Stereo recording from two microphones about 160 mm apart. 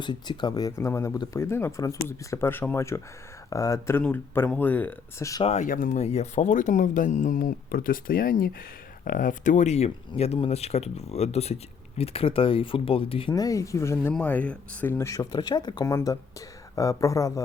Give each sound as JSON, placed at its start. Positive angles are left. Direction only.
{"t": 0.0, "sound": "speech", "side_deg": 30}
{"t": 5.4, "sound": "speech", "side_deg": 40}
{"t": 5.6, "sound": "speech", "side_deg": 60}
{"t": 13.3, "sound": "speech", "side_deg": 20}